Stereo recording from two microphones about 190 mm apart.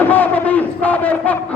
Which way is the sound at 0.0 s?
10° left (ahead or behind).